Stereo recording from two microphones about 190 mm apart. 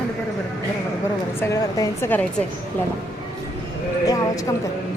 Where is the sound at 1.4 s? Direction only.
15° left (ahead or behind).